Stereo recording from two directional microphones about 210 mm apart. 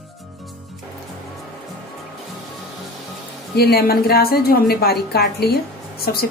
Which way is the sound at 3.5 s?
50° left (ahead or behind).